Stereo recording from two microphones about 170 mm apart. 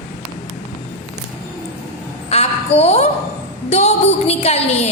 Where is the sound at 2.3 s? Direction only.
35° left (ahead or behind).